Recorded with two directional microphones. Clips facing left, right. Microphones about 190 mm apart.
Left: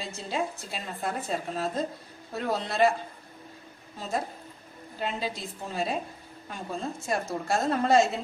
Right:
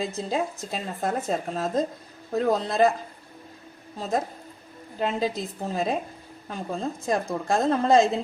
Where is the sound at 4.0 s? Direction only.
40° right (ahead or behind).